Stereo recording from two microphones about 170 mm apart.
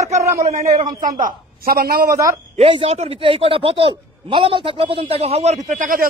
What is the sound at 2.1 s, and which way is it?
Speech, 20° right (ahead or behind).